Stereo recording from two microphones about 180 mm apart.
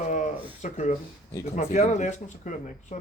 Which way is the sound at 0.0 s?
45° left (ahead or behind).